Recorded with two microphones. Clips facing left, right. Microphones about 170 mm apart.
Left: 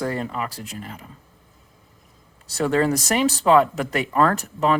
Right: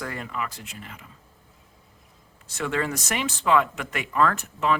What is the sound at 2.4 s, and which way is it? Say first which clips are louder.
Speech: left 7 dB; 35° left (ahead or behind).